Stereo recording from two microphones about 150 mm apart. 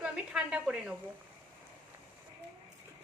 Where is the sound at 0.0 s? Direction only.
5° right (ahead or behind).